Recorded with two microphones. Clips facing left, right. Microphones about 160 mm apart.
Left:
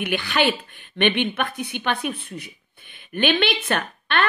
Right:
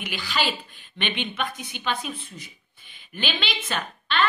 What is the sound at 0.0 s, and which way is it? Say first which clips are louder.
A woman's voice: left 6 dB; 65° left (ahead or behind).